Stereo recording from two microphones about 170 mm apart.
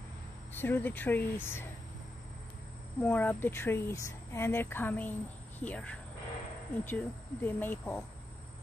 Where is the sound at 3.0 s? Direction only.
10° left (ahead or behind).